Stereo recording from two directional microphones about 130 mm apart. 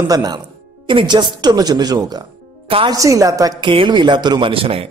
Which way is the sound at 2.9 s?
25° right (ahead or behind).